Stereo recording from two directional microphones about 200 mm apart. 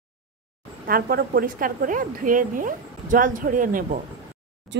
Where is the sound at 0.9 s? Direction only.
50° right (ahead or behind).